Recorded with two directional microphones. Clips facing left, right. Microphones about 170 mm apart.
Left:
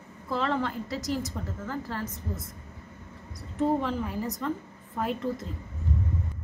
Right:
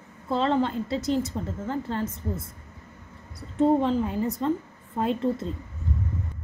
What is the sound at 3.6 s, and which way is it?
A woman's voice, 25° right (ahead or behind).